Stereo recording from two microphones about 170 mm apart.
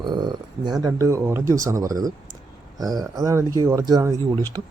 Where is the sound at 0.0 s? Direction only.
25° right (ahead or behind).